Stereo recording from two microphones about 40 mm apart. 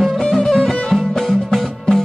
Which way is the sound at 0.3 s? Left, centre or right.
Centre.